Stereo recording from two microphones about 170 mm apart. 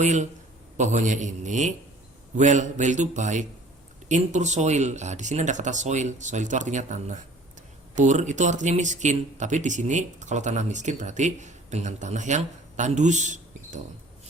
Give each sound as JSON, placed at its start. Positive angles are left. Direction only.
{"t": 0.0, "sound": "speech", "side_deg": -45}